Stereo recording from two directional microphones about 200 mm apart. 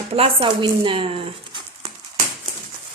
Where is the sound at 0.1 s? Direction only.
30° right (ahead or behind).